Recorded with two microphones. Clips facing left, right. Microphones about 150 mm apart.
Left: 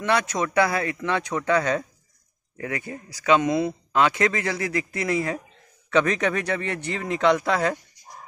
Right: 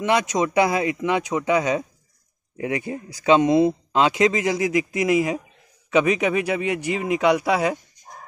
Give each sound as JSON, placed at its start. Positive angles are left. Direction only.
{"t": 0.0, "sound": "speech", "side_deg": -15}